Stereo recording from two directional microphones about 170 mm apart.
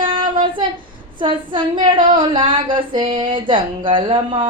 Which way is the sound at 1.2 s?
30° right (ahead or behind).